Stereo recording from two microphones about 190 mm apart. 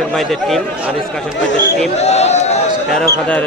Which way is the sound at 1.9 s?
35° left (ahead or behind).